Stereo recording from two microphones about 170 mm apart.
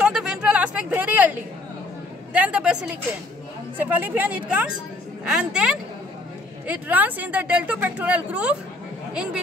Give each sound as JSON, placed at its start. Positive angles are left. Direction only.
{"t": 0.0, "sound": "vehicle", "side_deg": -5}
{"t": 2.3, "sound": "a woman's voice", "side_deg": -5}